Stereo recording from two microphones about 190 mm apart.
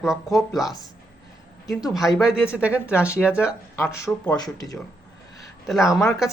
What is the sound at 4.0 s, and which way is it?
Speech, 20° left (ahead or behind).